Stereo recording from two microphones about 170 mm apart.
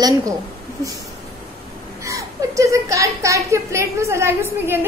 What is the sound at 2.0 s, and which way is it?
Speech, 20° right (ahead or behind).